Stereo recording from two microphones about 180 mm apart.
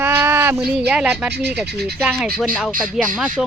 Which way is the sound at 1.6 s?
60° right (ahead or behind).